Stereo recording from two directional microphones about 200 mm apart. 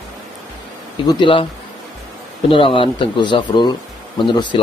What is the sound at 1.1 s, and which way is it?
Speech, 25° left (ahead or behind).